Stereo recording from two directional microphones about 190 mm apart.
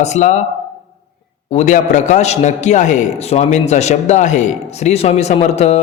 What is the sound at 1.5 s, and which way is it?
A man's voice, 40° left (ahead or behind).